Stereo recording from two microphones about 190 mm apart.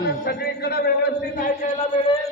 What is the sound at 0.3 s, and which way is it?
Speech, 55° left (ahead or behind).